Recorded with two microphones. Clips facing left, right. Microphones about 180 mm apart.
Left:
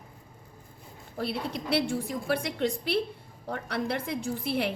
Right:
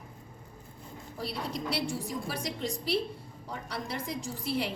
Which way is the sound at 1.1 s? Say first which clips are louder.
Left 4 dB; 60° left (ahead or behind).